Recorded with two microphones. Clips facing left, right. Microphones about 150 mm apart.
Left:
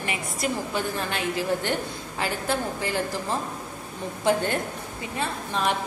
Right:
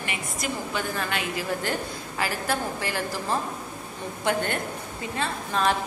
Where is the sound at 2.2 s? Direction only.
25° left (ahead or behind).